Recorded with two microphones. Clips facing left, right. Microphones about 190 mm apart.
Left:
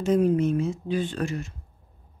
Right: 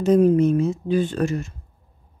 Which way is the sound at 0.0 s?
40° right (ahead or behind).